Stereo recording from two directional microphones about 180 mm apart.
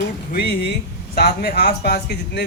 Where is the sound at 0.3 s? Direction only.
65° left (ahead or behind).